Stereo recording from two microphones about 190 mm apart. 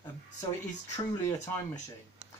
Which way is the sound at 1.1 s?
15° left (ahead or behind).